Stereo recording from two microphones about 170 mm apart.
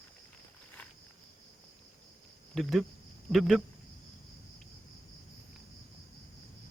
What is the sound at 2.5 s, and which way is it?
Speech, centre (ahead or behind).